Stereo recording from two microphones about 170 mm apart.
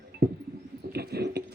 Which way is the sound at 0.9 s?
70° right (ahead or behind).